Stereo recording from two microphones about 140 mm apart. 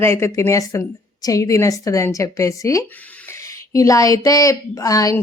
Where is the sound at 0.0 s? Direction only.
20° left (ahead or behind).